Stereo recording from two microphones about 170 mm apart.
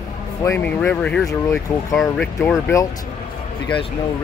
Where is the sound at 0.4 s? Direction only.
10° left (ahead or behind).